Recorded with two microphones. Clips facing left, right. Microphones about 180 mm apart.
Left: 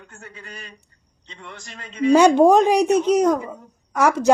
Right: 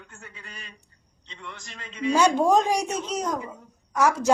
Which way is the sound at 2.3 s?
65° left (ahead or behind).